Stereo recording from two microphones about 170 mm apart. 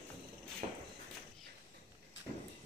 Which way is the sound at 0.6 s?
40° right (ahead or behind).